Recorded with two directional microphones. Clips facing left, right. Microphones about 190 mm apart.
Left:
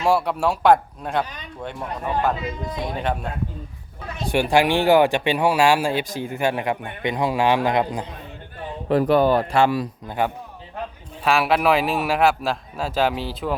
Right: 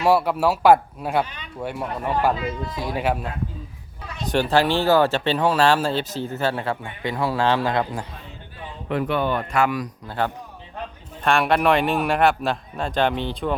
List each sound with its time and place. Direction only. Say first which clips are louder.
0.0 s a man's voice: right 1 dB; centre (ahead or behind)
4.2 s speech: left 1 dB; 10° left (ahead or behind)
8.9 s speech: left 6 dB; 40° left (ahead or behind)
10.1 s speech: left 1 dB; 15° left (ahead or behind)
11.2 s a man's voice: even; 5° left (ahead or behind)